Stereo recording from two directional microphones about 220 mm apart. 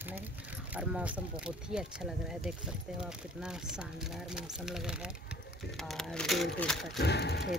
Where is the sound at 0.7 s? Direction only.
5° right (ahead or behind).